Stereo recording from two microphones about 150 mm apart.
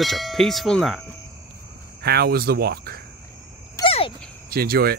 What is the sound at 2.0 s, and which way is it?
Speech, 90° right.